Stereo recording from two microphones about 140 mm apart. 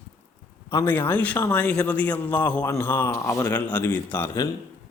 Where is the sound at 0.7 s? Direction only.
15° left (ahead or behind).